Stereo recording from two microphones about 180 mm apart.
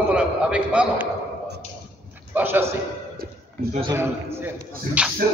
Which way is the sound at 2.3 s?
10° right (ahead or behind).